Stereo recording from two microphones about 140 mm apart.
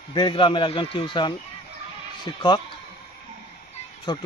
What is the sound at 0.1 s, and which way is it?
Speech, 35° left (ahead or behind).